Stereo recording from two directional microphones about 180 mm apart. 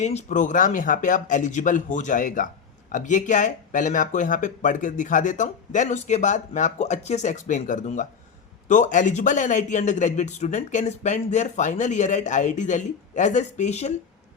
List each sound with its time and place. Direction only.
0.0 s a man's voice: 40° left (ahead or behind)